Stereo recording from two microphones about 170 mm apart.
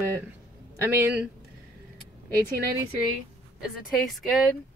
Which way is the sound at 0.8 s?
15° right (ahead or behind).